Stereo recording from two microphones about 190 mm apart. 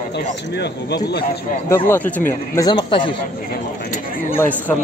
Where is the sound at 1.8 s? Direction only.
10° left (ahead or behind); by 3.1 s 25° left (ahead or behind).